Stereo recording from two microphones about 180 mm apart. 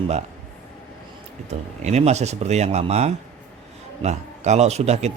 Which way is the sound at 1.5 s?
40° right (ahead or behind).